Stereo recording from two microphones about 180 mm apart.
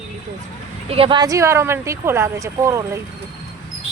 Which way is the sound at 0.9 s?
30° right (ahead or behind).